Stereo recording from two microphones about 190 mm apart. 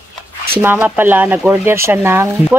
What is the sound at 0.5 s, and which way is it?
Speech, 10° right (ahead or behind).